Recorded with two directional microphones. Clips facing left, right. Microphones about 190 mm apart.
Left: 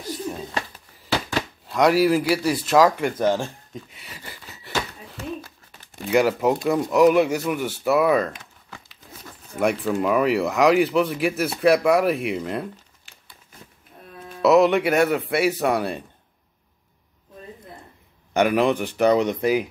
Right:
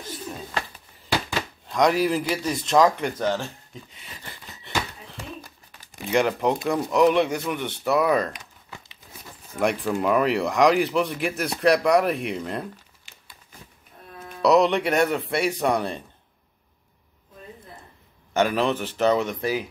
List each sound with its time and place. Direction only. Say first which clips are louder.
1.7 s speech: left 3 dB; 5° left (ahead or behind)
3.9 s wheeze: left 2 dB; 10° left (ahead or behind)
6.0 s speech: left 3 dB; 5° left (ahead or behind)
9.6 s speech: left 2 dB; centre (ahead or behind)
14.4 s speech: left 2 dB; 5° left (ahead or behind)
18.3 s speech: left 3 dB; 15° left (ahead or behind)